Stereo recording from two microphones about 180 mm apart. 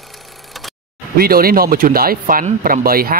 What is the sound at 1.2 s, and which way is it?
Speech, 55° right (ahead or behind).